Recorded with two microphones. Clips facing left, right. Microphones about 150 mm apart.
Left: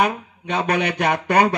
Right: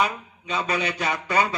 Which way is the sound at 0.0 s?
60° left (ahead or behind).